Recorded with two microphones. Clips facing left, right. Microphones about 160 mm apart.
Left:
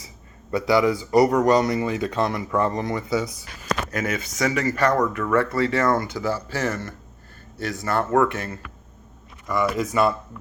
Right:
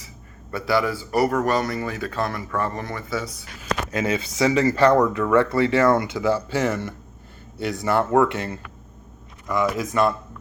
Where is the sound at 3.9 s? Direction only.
25° right (ahead or behind).